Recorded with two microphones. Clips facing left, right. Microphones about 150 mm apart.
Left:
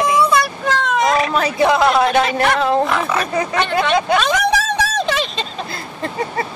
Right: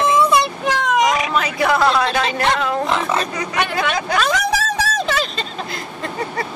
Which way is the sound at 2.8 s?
25° right (ahead or behind).